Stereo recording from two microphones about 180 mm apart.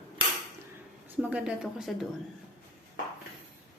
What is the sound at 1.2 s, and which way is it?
Speech, 10° right (ahead or behind).